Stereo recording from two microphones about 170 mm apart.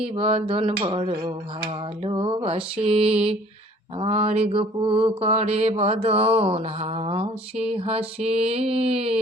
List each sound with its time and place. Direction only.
0.0 s mantra: 35° right (ahead or behind)